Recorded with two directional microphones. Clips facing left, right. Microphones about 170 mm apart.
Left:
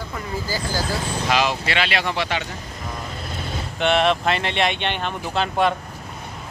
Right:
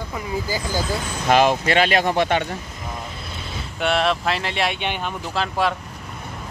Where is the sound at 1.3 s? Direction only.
50° right (ahead or behind).